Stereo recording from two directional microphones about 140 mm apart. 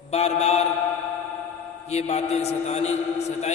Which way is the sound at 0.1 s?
50° left (ahead or behind).